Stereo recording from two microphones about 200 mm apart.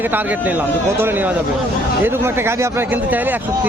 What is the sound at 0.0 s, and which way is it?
Speech, 10° right (ahead or behind).